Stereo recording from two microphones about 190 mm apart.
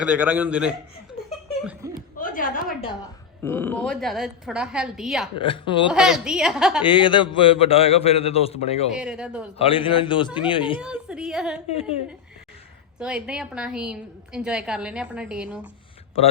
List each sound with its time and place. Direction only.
0.0 s a man's voice: 5° right (ahead or behind)
1.6 s laughter: 5° right (ahead or behind)
2.1 s a sound: 45° left (ahead or behind)
3.4 s a woman's voice: 10° left (ahead or behind)
5.4 s speech: 25° left (ahead or behind)
5.9 s a woman's voice: 5° right (ahead or behind)
6.8 s a man's voice: 25° left (ahead or behind)
8.9 s a woman's voice: 5° right (ahead or behind)
9.6 s speech: 30° left (ahead or behind)
10.8 s a woman's voice: 5° right (ahead or behind)
11.7 s a man's voice: 30° left (ahead or behind)
13.0 s a woman's voice: 5° right (ahead or behind)